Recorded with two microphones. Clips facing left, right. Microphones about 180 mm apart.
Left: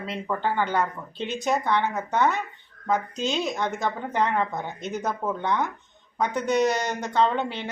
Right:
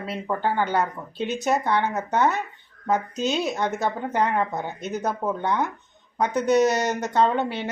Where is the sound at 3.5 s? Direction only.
40° right (ahead or behind).